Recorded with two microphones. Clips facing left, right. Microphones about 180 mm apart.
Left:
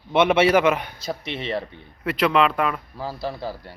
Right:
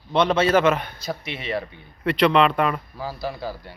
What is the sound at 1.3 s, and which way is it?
Speech, 25° left (ahead or behind).